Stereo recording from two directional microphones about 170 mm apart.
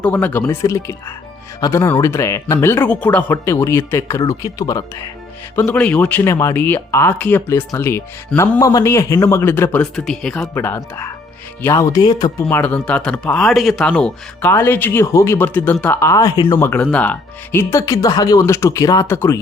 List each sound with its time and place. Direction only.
0.0 s speech: 10° left (ahead or behind)
5.5 s speech: 10° left (ahead or behind)
10.5 s speech: 15° left (ahead or behind)
12.5 s speech: 10° left (ahead or behind)